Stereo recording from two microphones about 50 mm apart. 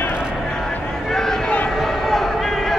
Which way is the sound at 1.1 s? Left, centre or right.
Centre.